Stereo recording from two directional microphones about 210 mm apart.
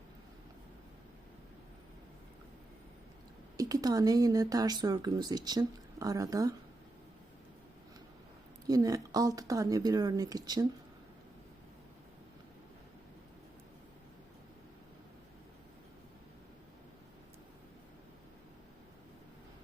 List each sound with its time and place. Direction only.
3.6 s speech: 15° right (ahead or behind)
8.6 s speech: 15° right (ahead or behind)